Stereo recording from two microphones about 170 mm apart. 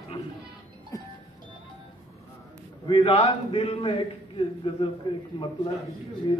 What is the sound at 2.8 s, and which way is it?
A man's voice, 30° left (ahead or behind).